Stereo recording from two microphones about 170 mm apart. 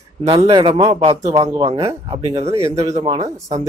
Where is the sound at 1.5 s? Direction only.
20° right (ahead or behind).